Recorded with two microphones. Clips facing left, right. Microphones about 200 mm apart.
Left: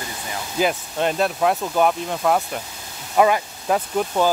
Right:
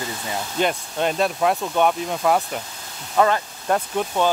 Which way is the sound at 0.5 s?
Centre (ahead or behind).